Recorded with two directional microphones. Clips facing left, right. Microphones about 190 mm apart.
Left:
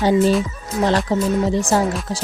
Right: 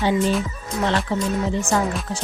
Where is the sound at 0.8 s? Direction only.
40° left (ahead or behind).